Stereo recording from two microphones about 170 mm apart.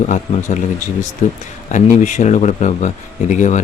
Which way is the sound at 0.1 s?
45° left (ahead or behind).